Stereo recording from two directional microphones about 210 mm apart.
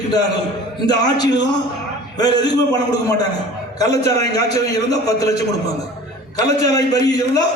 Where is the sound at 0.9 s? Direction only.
20° left (ahead or behind).